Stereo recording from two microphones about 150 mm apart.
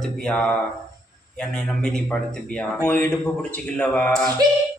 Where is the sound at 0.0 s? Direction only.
5° left (ahead or behind).